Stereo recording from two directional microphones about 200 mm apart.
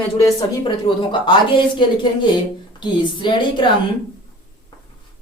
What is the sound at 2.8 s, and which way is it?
Speech, 20° left (ahead or behind).